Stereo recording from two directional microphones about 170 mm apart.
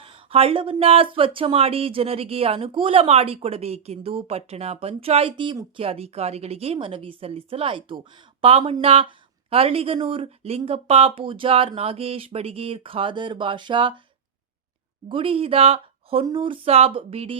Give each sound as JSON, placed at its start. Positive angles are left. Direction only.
{"t": 0.0, "sound": "speech", "side_deg": -30}
{"t": 15.1, "sound": "speech", "side_deg": -30}